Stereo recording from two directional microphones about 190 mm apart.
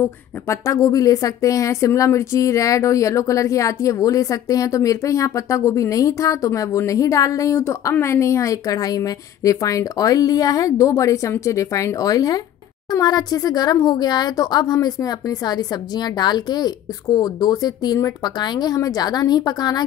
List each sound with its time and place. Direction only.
0.0 s a woman's voice: 15° left (ahead or behind)